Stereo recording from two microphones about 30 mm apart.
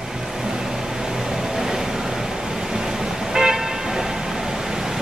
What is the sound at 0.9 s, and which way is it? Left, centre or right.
Vehicle, centre.